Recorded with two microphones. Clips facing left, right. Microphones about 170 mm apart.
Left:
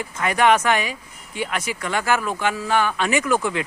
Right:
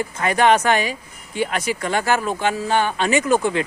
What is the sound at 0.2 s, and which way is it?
Speech, 35° right (ahead or behind).